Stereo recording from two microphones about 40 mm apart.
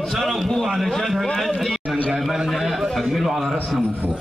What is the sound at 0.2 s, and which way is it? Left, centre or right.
Speech, centre.